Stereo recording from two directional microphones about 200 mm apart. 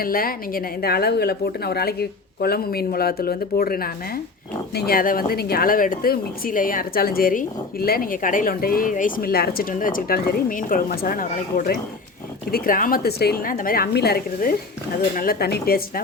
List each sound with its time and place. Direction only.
0.0 s speech: 45° left (ahead or behind)